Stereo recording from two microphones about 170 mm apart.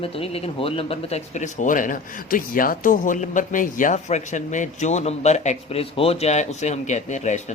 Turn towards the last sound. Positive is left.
turn(degrees=45)  # may be behind; listen again after turning